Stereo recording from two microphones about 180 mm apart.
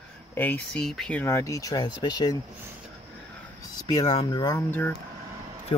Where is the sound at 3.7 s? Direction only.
25° left (ahead or behind).